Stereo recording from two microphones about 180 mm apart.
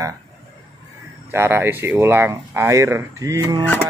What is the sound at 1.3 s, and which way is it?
Speech, 15° right (ahead or behind).